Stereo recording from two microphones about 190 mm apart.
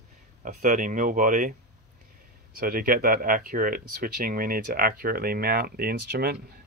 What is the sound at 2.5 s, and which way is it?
Speech, 50° right (ahead or behind).